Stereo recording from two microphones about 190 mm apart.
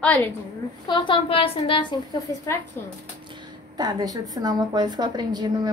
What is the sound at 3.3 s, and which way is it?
A woman's voice, 20° right (ahead or behind).